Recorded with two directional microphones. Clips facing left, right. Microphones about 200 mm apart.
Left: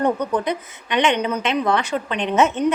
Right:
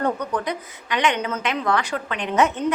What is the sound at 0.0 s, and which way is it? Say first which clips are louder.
A woman's voice: left 4 dB; 20° left (ahead or behind).